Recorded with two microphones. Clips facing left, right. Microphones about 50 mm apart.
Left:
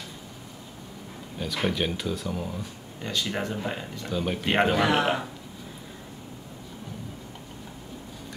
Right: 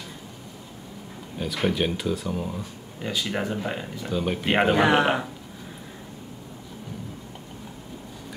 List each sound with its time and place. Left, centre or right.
1.4 s speech: centre
4.7 s a man's voice: right